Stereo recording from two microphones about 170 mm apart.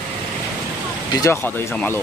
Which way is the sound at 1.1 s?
15° left (ahead or behind).